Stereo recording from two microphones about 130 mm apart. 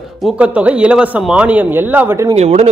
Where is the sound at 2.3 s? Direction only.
55° right (ahead or behind).